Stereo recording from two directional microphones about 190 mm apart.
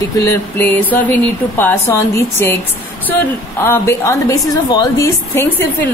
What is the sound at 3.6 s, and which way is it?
A woman's voice, 15° left (ahead or behind).